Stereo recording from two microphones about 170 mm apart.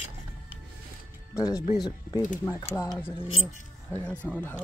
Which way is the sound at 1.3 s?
20° left (ahead or behind).